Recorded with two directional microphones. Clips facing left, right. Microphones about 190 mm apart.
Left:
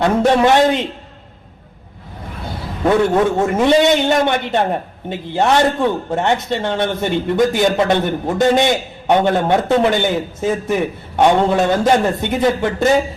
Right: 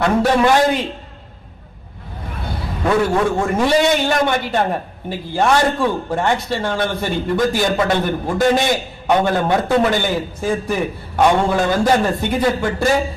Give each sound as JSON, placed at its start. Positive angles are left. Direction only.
{"t": 0.0, "sound": "a man's voice", "side_deg": 20}
{"t": 2.8, "sound": "a man's voice", "side_deg": 20}